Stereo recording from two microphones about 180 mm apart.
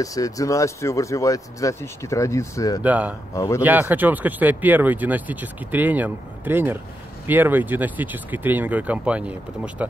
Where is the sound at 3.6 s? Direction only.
10° right (ahead or behind).